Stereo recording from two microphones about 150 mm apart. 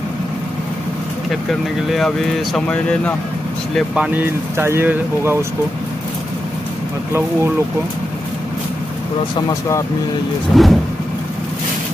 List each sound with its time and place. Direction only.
1.3 s speech: centre (ahead or behind)
3.7 s speech: 5° right (ahead or behind)
9.5 s speech: 20° left (ahead or behind)
10.5 s speech: centre (ahead or behind)